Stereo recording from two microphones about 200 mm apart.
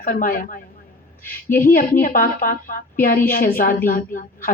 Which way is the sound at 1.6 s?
45° left (ahead or behind).